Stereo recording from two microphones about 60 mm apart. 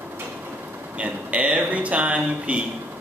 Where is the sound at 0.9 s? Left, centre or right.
Right.